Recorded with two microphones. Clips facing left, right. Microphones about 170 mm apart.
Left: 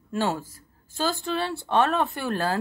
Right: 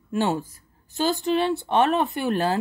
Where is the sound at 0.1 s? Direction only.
20° right (ahead or behind).